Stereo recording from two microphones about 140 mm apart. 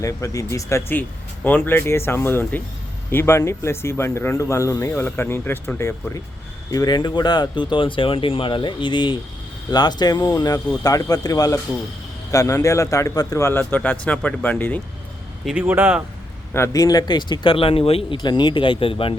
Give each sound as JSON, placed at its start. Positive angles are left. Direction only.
{"t": 0.0, "sound": "speech", "side_deg": 25}
{"t": 6.7, "sound": "speech", "side_deg": 25}
{"t": 15.4, "sound": "speech", "side_deg": -10}
{"t": 16.6, "sound": "speech", "side_deg": 25}
{"t": 18.2, "sound": "speech", "side_deg": 30}